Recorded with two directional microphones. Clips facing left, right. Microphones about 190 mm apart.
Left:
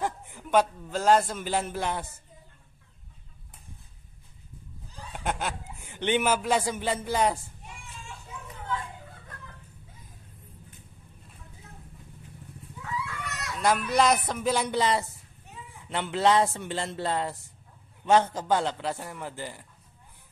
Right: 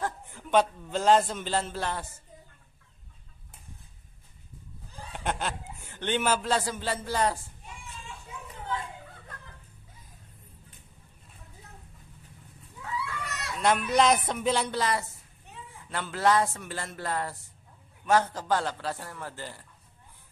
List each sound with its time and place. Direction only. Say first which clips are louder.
0.0 s a man's voice: left 2 dB; 15° left (ahead or behind)
5.1 s a man's voice: left 1 dB; 10° left (ahead or behind)
13.0 s chicken: even; 30° right (ahead or behind)
13.6 s a man's voice: even; centre (ahead or behind)